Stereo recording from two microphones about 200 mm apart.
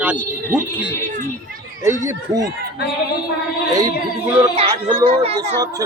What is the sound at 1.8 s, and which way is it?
Speech, 15° right (ahead or behind).